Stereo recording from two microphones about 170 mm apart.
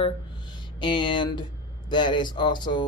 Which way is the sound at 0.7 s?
30° left (ahead or behind).